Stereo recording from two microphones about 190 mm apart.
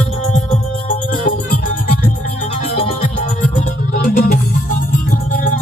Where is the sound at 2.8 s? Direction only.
35° left (ahead or behind).